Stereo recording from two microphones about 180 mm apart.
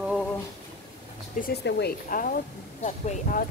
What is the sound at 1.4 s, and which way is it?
Speech, 65° left (ahead or behind).